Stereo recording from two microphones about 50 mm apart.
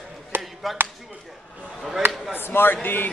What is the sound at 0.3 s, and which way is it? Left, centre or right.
Chop, right.